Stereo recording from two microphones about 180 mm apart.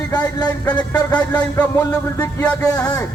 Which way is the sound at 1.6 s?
15° left (ahead or behind).